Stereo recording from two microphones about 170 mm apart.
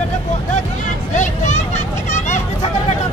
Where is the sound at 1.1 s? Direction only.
45° left (ahead or behind).